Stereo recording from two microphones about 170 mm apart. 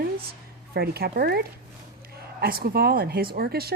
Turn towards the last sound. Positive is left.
turn(degrees=-65)  # may be behind; listen again after turning